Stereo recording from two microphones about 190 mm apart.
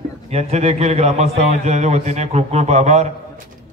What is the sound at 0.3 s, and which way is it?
A man's voice, 35° right (ahead or behind).